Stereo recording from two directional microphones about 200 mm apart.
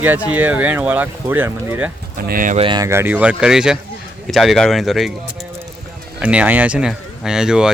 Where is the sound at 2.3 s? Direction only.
40° right (ahead or behind).